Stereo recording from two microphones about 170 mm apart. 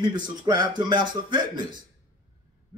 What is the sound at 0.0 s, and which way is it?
A man's voice, 25° right (ahead or behind).